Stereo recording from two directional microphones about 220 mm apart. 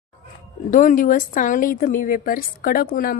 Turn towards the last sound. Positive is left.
turn(degrees=40)  # may be behind; listen again after turning